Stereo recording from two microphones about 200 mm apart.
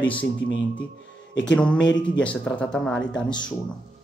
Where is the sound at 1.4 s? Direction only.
5° left (ahead or behind).